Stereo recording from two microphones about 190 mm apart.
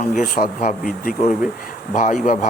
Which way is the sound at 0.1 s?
45° left (ahead or behind).